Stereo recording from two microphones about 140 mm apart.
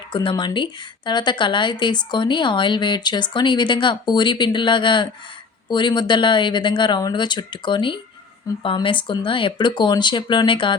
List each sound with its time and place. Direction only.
0.1 s a woman's voice: 35° left (ahead or behind)